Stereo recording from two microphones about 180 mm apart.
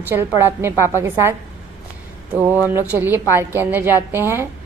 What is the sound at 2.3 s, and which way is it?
A woman's voice, 10° right (ahead or behind).